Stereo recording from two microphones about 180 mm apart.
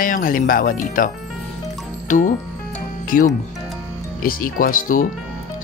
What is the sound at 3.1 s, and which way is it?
Speech, 50° left (ahead or behind).